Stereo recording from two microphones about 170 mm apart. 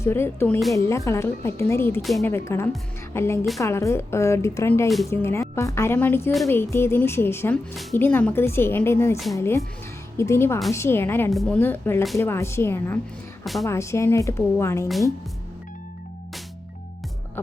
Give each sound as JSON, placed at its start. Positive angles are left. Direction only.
{"t": 0.0, "sound": "speech", "side_deg": 15}
{"t": 13.4, "sound": "speech", "side_deg": 0}
{"t": 13.7, "sound": "speech", "side_deg": 15}